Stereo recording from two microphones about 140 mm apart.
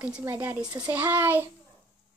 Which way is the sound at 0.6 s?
30° right (ahead or behind).